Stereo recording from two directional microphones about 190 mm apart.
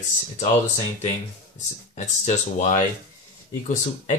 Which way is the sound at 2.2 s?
35° left (ahead or behind).